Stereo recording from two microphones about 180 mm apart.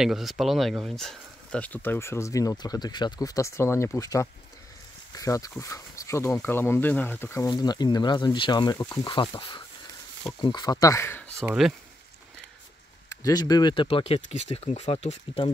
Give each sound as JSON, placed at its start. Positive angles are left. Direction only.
{"t": 0.0, "sound": "speech", "side_deg": 0}
{"t": 11.4, "sound": "speech", "side_deg": 0}
{"t": 13.2, "sound": "speech", "side_deg": 20}